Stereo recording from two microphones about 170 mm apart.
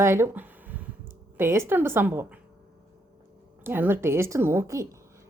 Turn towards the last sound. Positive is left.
turn(degrees=-15)  # may be behind; listen again after turning